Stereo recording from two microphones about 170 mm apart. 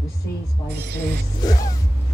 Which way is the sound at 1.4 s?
20° left (ahead or behind).